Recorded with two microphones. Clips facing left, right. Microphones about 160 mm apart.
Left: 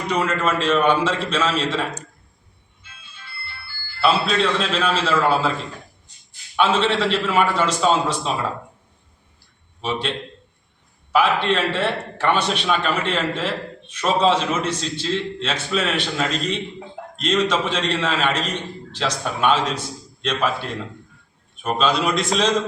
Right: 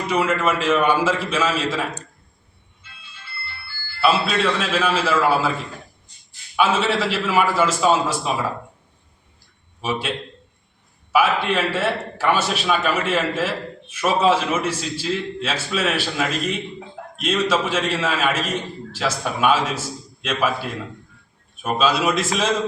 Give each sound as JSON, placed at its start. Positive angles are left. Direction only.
{"t": 0.1, "sound": "a man's voice", "side_deg": -5}
{"t": 4.0, "sound": "a man's voice", "side_deg": -5}
{"t": 6.6, "sound": "a man's voice", "side_deg": -5}
{"t": 9.8, "sound": "a man's voice", "side_deg": -5}